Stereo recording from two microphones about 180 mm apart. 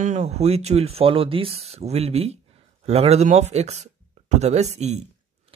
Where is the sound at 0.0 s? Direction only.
40° right (ahead or behind).